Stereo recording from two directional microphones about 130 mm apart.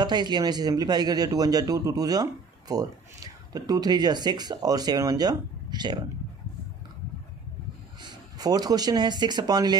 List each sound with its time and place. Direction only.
0.0 s a man's voice: 35° right (ahead or behind)
8.0 s speech: 30° right (ahead or behind)